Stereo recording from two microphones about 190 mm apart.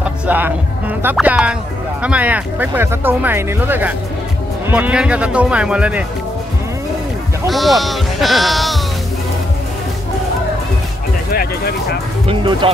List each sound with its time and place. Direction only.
0.0 s speech: 10° right (ahead or behind)
7.4 s speech: centre (ahead or behind)
11.3 s speech: 55° left (ahead or behind)
12.3 s speech: 25° right (ahead or behind)